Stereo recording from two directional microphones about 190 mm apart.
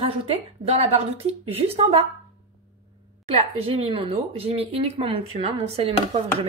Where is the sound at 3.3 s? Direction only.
30° right (ahead or behind).